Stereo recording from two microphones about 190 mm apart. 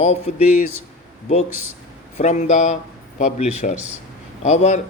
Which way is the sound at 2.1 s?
40° left (ahead or behind).